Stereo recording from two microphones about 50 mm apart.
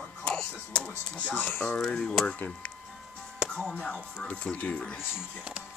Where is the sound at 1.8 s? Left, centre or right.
Centre.